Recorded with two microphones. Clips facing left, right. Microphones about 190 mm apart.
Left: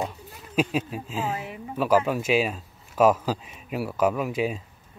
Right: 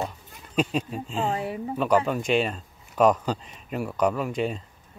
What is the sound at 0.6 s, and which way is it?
Speech, 5° left (ahead or behind).